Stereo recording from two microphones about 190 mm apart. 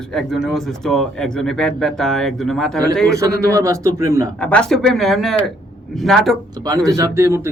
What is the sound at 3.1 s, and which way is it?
A man's voice, 15° right (ahead or behind).